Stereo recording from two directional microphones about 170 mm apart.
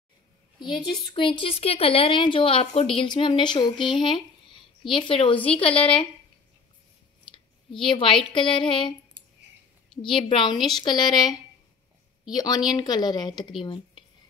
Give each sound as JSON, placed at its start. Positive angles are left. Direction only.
{"t": 0.6, "sound": "a woman's voice", "side_deg": 25}
{"t": 7.2, "sound": "speech", "side_deg": 30}
{"t": 10.0, "sound": "speech", "side_deg": 30}